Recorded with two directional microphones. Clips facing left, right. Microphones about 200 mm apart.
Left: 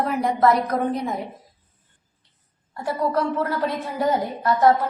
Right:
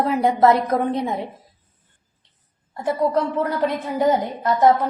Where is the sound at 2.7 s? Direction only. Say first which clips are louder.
Right 3 dB; 20° right (ahead or behind).